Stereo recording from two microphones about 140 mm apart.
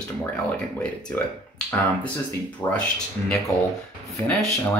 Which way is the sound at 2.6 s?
20° left (ahead or behind).